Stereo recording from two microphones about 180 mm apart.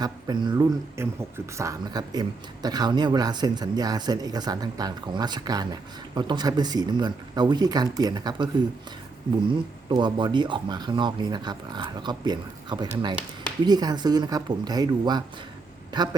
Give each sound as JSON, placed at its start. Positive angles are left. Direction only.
{"t": 0.0, "sound": "speech", "side_deg": -25}
{"t": 9.9, "sound": "speech", "side_deg": -25}